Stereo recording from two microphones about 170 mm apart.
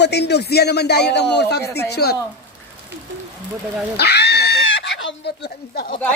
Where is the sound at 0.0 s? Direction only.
80° left.